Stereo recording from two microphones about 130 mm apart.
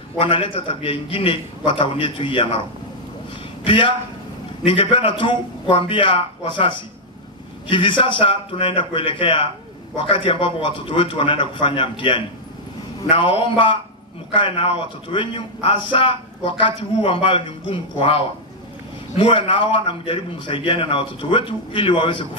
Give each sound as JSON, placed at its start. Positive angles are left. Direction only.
{"t": 0.2, "sound": "a man's voice", "side_deg": 40}
{"t": 3.6, "sound": "a man's voice", "side_deg": 40}
{"t": 7.7, "sound": "a man's voice", "side_deg": 40}